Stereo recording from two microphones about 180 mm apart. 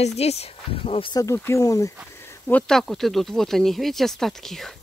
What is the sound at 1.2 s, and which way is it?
Speech, 15° left (ahead or behind).